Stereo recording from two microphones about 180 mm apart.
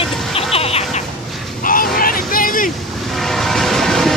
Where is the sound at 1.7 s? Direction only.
50° left (ahead or behind).